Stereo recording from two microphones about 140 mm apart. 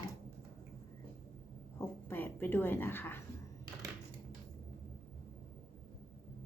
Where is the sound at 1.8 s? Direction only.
15° left (ahead or behind).